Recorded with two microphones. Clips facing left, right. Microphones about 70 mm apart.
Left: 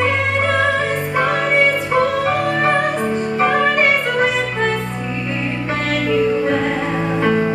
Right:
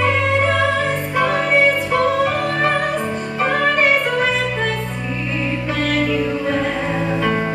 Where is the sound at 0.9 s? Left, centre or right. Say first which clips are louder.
Left 1 dB; left.